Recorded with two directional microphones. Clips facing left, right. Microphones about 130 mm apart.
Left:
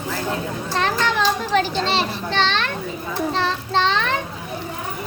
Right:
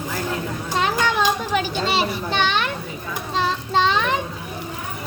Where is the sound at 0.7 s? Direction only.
15° right (ahead or behind).